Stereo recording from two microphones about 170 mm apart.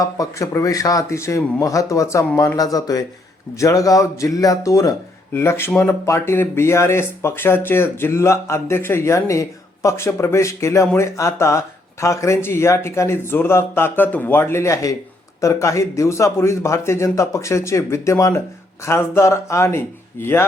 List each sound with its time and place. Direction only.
0.0 s speech: 20° left (ahead or behind)